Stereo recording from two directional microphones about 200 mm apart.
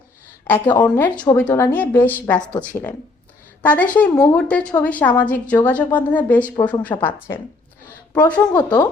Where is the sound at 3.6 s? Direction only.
5° left (ahead or behind).